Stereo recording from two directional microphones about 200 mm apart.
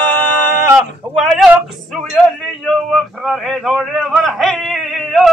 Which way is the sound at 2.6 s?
Centre (ahead or behind).